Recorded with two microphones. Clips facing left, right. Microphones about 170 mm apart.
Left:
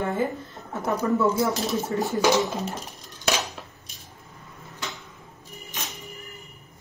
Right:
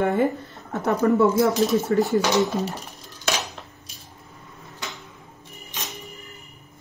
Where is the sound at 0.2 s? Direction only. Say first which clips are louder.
Right 5 dB; 70° right (ahead or behind).